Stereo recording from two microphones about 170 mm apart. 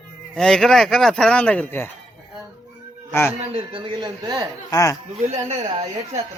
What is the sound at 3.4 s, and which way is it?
Speech, 35° right (ahead or behind).